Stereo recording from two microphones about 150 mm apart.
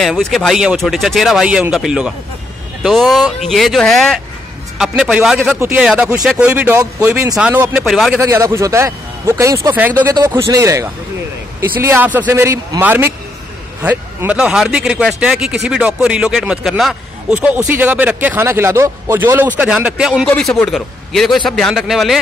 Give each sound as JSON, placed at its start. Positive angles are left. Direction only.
{"t": 0.0, "sound": "speech", "side_deg": 0}
{"t": 8.2, "sound": "speech", "side_deg": -20}